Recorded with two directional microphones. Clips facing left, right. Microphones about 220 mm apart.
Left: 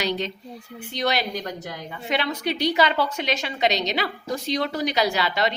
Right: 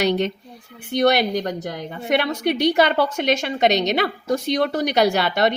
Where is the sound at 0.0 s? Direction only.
55° right (ahead or behind).